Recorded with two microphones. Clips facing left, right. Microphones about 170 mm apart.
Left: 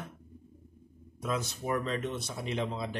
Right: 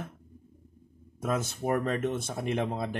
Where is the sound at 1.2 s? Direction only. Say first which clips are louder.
Right 4 dB; 50° right (ahead or behind).